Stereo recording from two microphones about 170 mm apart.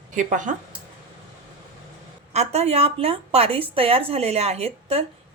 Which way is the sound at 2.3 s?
40° right (ahead or behind).